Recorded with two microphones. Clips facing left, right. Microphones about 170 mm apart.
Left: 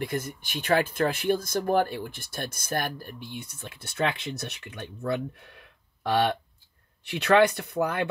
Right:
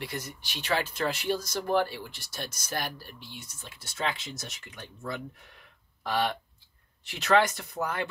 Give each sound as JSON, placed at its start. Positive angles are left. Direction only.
{"t": 0.0, "sound": "speech", "side_deg": 50}
{"t": 7.1, "sound": "speech", "side_deg": 60}